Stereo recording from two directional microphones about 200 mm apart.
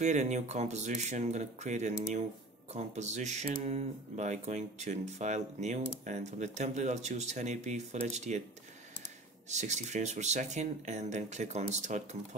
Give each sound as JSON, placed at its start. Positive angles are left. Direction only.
{"t": 0.0, "sound": "speech", "side_deg": -35}